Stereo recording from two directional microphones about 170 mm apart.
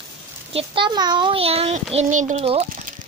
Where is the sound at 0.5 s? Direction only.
30° right (ahead or behind).